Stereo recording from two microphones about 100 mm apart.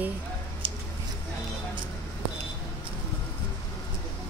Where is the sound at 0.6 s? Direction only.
60° right (ahead or behind).